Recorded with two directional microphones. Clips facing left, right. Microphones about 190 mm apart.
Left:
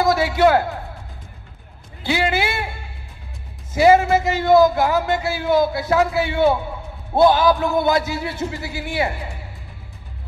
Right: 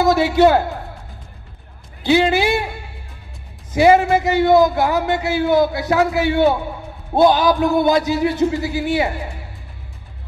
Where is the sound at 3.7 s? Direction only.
20° right (ahead or behind).